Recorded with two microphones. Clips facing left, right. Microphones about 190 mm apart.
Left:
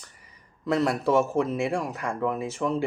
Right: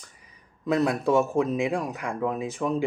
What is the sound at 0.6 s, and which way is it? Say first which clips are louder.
Speech: right 1 dB; 15° right (ahead or behind).